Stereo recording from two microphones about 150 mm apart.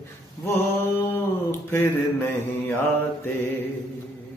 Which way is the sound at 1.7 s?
15° left (ahead or behind).